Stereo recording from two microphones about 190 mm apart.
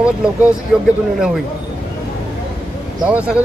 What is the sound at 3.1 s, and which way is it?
Speech, 5° right (ahead or behind).